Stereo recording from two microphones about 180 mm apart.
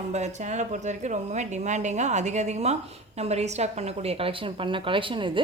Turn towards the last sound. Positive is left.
turn(degrees=-25)  # may be behind; listen again after turning